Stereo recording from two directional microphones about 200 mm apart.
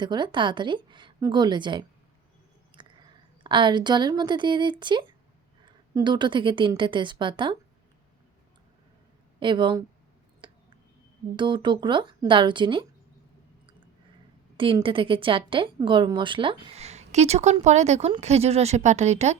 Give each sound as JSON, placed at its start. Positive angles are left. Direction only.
{"t": 0.0, "sound": "a woman's voice", "side_deg": -20}
{"t": 2.7, "sound": "a sound", "side_deg": -25}
{"t": 3.4, "sound": "a woman's voice", "side_deg": -25}
{"t": 9.4, "sound": "a woman's voice", "side_deg": -25}
{"t": 10.4, "sound": "a sound", "side_deg": -25}
{"t": 11.3, "sound": "a woman's voice", "side_deg": -25}
{"t": 14.5, "sound": "a woman's voice", "side_deg": -25}